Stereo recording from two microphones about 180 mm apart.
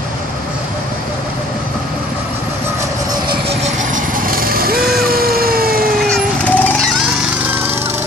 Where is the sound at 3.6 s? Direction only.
45° right (ahead or behind).